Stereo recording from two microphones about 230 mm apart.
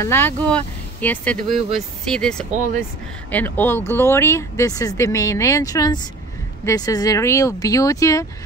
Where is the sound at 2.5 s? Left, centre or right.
Right.